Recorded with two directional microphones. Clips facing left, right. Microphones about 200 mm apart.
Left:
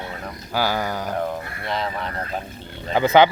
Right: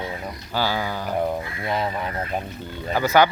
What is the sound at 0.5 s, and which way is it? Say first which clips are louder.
Speech: left 2 dB; 15° left (ahead or behind).